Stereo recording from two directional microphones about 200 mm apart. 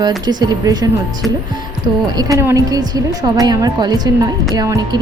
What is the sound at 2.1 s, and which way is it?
A woman's voice, 15° right (ahead or behind).